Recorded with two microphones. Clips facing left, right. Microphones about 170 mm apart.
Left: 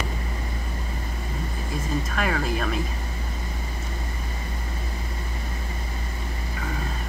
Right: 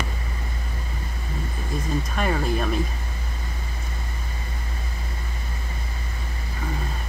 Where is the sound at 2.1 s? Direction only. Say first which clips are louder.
Right 2 dB; 5° right (ahead or behind).